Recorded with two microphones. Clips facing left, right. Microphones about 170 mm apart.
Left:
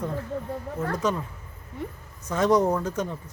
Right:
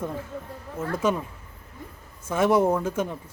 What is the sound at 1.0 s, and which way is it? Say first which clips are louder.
Speech: right 4 dB; 10° right (ahead or behind).